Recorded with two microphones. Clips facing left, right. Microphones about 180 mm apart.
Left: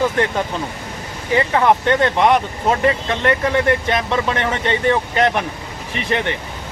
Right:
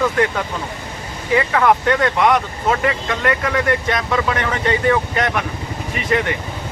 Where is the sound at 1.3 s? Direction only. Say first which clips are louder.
Even; 25° left (ahead or behind).